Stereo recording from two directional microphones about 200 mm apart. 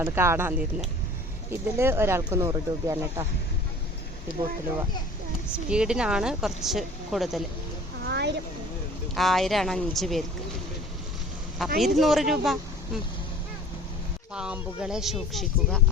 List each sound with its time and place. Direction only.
0.0 s speech: 10° right (ahead or behind)
5.6 s speech: 5° right (ahead or behind)
8.0 s a sound: 55° right (ahead or behind)
9.1 s speech: centre (ahead or behind)
11.6 s speech: centre (ahead or behind)
14.3 s speech: 5° right (ahead or behind)